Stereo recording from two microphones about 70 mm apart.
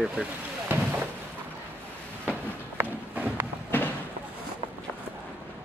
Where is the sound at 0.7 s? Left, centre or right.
Right.